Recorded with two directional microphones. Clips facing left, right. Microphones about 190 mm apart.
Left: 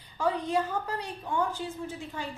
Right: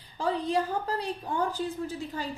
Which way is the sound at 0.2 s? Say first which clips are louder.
Even; 30° right (ahead or behind).